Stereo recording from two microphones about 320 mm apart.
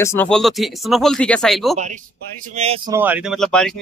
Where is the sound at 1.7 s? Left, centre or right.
Right.